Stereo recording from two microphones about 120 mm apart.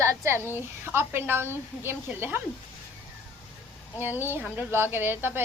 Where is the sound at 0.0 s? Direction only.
25° right (ahead or behind).